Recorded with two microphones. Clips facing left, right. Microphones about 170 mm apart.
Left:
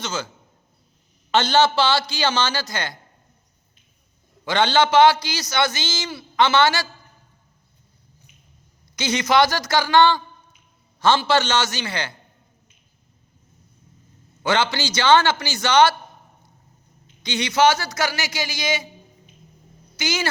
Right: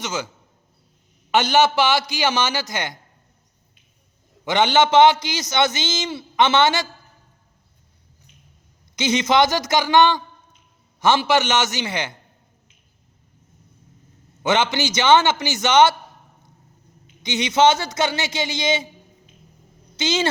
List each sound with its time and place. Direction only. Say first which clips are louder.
0.0 s a man's voice: right 1 dB; 15° right (ahead or behind)
1.3 s a man's voice: right 1 dB; 15° right (ahead or behind)
4.4 s a man's voice: right 1 dB; 20° right (ahead or behind)
9.0 s a man's voice: right 1 dB; 20° right (ahead or behind)
14.4 s a man's voice: right 2 dB; 20° right (ahead or behind)
17.2 s a man's voice: right 1 dB; 20° right (ahead or behind)
20.0 s a man's voice: right 4 dB; 25° right (ahead or behind)